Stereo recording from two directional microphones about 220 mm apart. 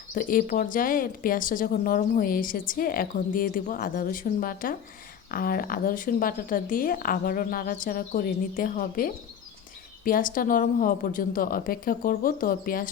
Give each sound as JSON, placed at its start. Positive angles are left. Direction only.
{"t": 0.1, "sound": "speech", "side_deg": 40}